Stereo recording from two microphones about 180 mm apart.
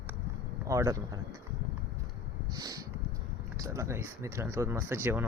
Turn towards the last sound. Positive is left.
turn(degrees=-10)  # may be behind; listen again after turning